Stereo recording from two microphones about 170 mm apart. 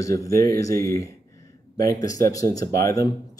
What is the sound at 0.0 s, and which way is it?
Speech, 20° left (ahead or behind).